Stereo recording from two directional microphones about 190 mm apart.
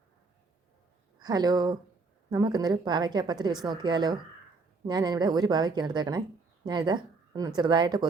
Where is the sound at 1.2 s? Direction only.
20° right (ahead or behind).